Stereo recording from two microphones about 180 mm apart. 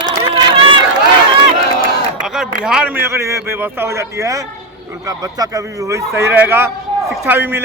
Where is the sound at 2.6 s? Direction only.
5° right (ahead or behind).